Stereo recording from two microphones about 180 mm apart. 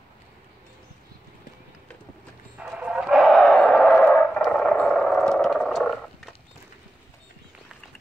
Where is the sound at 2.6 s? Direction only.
5° right (ahead or behind).